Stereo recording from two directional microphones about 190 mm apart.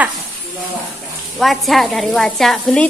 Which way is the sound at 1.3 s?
Centre (ahead or behind).